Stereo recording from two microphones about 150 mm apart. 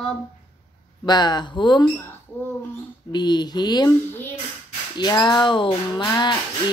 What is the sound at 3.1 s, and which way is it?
Speech, 30° left (ahead or behind).